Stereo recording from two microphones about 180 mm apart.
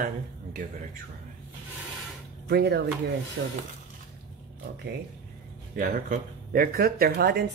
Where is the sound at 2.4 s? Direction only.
70° right (ahead or behind).